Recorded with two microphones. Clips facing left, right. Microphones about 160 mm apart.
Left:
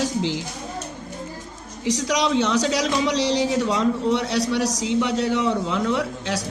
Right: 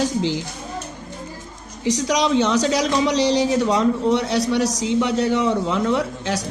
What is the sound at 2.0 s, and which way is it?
A man's voice, 45° right (ahead or behind).